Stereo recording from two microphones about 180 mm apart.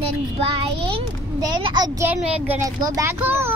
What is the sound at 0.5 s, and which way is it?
Speech, 30° right (ahead or behind).